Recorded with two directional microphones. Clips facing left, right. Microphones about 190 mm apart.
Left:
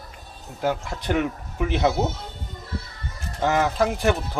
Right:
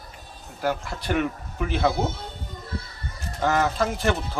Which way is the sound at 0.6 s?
15° left (ahead or behind).